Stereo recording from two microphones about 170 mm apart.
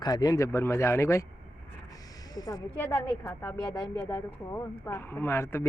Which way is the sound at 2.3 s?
20° left (ahead or behind).